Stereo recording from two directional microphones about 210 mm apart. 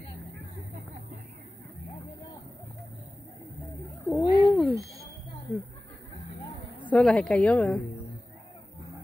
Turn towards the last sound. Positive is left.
turn(degrees=5)  # may be behind; listen again after turning